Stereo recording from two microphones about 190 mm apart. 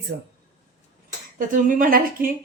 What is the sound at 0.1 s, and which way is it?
Speech, 65° right (ahead or behind).